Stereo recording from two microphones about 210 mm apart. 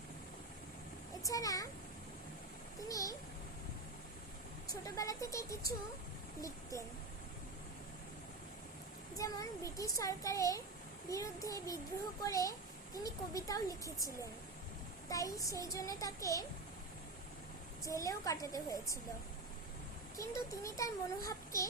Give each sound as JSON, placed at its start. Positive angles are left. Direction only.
{"t": 1.2, "sound": "a child's voice", "side_deg": 15}
{"t": 2.9, "sound": "a child's voice", "side_deg": 15}
{"t": 4.7, "sound": "a child's voice", "side_deg": 15}
{"t": 9.1, "sound": "a child's voice", "side_deg": 15}
{"t": 17.8, "sound": "a child's voice", "side_deg": 15}
{"t": 20.1, "sound": "a child's voice", "side_deg": 15}